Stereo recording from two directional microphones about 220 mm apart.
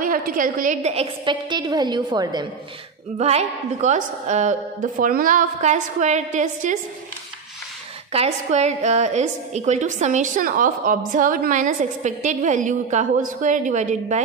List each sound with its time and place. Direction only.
0.0 s a woman's voice: 40° right (ahead or behind)
8.1 s a woman's voice: 30° right (ahead or behind)